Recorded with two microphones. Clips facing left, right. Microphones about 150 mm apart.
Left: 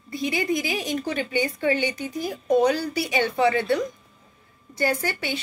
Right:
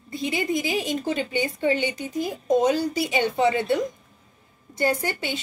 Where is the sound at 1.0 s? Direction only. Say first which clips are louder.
Even; 20° right (ahead or behind).